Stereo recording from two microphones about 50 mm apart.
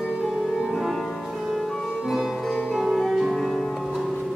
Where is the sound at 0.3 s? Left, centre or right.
Centre.